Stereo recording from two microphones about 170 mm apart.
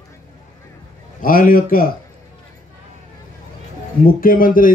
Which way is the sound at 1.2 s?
55° left (ahead or behind).